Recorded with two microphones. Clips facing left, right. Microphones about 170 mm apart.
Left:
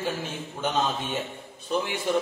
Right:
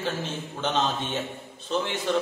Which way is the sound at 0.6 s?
10° left (ahead or behind).